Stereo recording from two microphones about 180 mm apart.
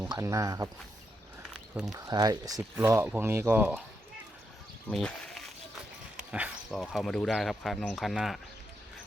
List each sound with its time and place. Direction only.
0.1 s speech: 20° right (ahead or behind)
1.8 s speech: 20° right (ahead or behind)
4.9 s speech: 5° left (ahead or behind)